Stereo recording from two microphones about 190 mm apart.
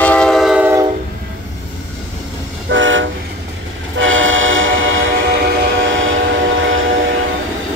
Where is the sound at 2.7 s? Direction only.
85° right.